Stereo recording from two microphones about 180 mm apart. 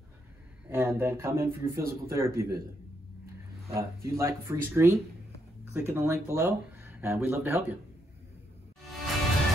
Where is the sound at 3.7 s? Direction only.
15° right (ahead or behind).